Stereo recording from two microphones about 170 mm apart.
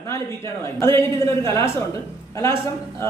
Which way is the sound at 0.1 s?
15° left (ahead or behind).